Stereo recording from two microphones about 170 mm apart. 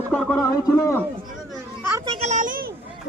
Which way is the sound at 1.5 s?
15° right (ahead or behind).